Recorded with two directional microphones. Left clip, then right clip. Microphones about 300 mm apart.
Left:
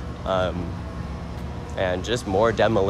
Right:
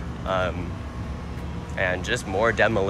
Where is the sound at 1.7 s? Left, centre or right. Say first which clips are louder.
Even; centre.